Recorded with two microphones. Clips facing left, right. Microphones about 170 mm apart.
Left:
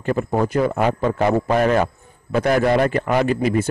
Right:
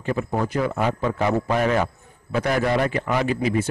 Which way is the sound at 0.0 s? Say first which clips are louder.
Left 4 dB; 45° left (ahead or behind).